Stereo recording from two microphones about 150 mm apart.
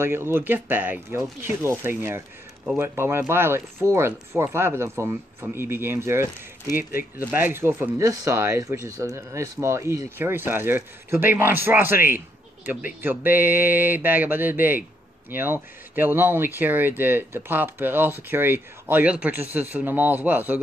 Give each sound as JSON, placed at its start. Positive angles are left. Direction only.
{"t": 0.0, "sound": "speech", "side_deg": -15}
{"t": 6.8, "sound": "speech", "side_deg": 70}
{"t": 7.2, "sound": "speech", "side_deg": -10}